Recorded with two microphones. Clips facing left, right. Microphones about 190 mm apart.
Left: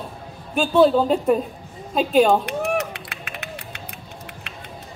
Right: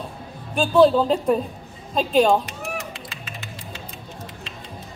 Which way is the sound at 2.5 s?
65° left (ahead or behind).